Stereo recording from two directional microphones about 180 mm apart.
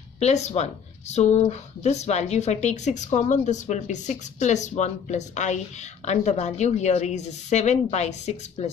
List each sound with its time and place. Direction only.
0.2 s speech: 40° left (ahead or behind)